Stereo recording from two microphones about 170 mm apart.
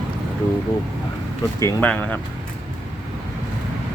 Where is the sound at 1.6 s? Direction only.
10° left (ahead or behind).